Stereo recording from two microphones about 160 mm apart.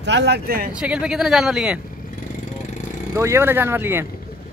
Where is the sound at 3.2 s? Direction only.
15° right (ahead or behind).